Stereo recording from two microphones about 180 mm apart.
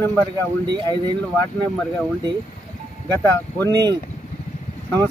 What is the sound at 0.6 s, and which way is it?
Speech, 25° right (ahead or behind).